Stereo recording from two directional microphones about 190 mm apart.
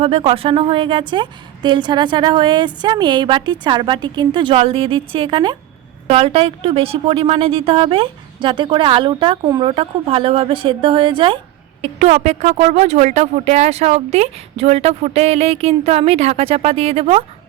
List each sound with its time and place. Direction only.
0.0 s a woman's voice: 30° right (ahead or behind)